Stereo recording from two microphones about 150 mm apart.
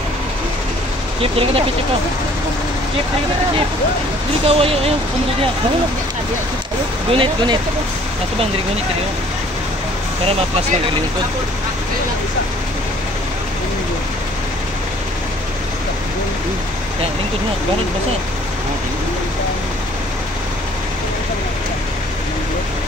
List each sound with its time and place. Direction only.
1.2 s speech: 40° right (ahead or behind)
4.5 s speech: 40° right (ahead or behind)
7.1 s speech: 35° right (ahead or behind)